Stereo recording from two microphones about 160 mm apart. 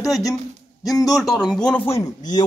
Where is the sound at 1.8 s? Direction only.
20° left (ahead or behind).